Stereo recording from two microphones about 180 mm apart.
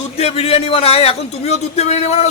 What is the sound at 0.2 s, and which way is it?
A man's voice, 35° left (ahead or behind).